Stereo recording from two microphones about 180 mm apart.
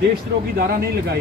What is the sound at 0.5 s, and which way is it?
Speech, 60° right (ahead or behind).